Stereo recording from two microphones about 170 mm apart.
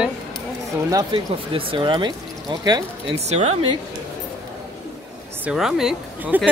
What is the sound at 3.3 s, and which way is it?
Speech, 40° right (ahead or behind).